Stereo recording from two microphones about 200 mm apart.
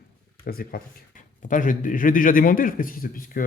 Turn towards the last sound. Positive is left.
turn(degrees=45)  # may be behind; listen again after turning